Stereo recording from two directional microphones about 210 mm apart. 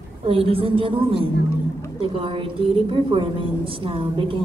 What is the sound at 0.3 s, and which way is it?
A woman's voice, 25° right (ahead or behind).